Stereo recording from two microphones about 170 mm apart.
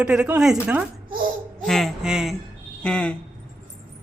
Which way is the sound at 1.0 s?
55° right (ahead or behind).